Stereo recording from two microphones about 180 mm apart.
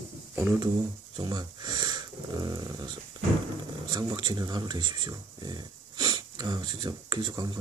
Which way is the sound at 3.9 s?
25° right (ahead or behind).